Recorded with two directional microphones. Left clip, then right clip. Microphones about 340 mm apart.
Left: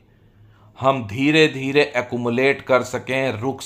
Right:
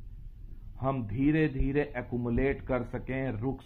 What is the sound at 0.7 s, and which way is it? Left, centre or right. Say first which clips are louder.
Speech: left 13 dB; centre.